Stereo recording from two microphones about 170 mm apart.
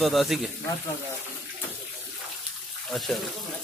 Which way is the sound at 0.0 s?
Centre (ahead or behind).